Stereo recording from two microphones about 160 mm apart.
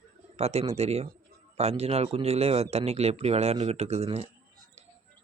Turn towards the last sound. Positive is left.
turn(degrees=-40)  # may be behind; listen again after turning